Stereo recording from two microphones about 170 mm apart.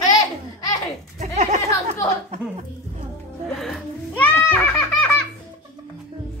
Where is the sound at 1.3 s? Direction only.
45° right (ahead or behind).